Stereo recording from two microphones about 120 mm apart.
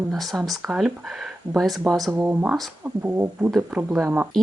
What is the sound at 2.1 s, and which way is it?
Speech, 15° right (ahead or behind).